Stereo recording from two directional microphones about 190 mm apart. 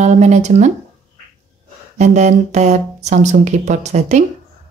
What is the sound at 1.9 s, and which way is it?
Speech, 35° right (ahead or behind).